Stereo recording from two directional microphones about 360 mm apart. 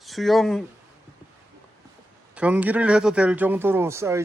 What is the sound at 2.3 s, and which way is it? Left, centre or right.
Speech, centre.